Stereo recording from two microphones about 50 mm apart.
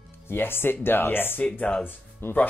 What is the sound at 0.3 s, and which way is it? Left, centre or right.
Speech, left.